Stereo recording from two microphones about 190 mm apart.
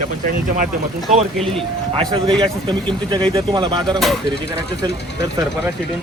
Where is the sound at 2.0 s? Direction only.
30° right (ahead or behind).